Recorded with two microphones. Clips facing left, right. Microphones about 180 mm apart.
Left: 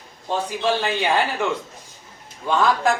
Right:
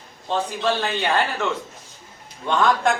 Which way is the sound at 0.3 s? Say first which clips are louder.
Even; 10° left (ahead or behind).